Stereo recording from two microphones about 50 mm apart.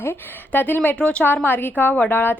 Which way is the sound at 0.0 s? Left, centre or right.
Left.